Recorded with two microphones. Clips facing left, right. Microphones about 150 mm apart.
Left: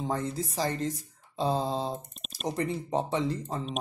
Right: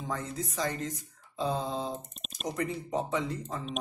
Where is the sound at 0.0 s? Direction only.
30° left (ahead or behind).